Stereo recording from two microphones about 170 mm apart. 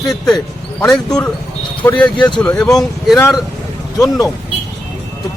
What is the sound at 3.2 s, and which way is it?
Speech, 20° left (ahead or behind).